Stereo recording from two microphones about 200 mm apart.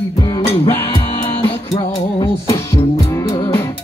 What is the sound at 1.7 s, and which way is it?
Music, 30° left (ahead or behind).